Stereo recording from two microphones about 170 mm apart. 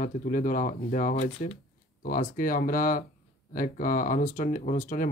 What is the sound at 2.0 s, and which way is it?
Speech, 55° left (ahead or behind).